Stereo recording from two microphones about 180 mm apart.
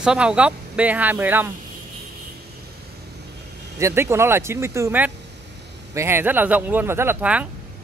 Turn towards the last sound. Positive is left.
turn(degrees=-10)  # may be behind; listen again after turning